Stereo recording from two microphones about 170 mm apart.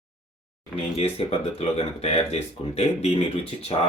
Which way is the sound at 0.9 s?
35° left (ahead or behind).